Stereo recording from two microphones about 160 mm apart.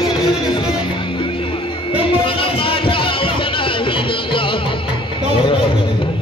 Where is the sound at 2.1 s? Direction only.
35° left (ahead or behind).